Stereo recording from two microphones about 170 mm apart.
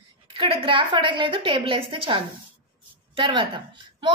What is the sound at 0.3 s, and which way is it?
A woman's voice, 30° right (ahead or behind).